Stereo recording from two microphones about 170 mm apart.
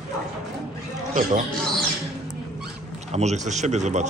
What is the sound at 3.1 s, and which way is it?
Speech, 40° right (ahead or behind).